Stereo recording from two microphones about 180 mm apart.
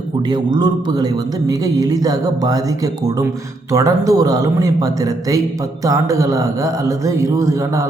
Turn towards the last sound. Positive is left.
turn(degrees=-20)  # may be behind; listen again after turning